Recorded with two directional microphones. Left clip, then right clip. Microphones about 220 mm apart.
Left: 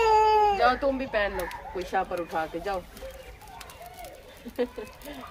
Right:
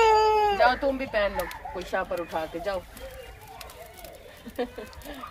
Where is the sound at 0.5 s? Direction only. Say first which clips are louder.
Right 1 dB; centre (ahead or behind).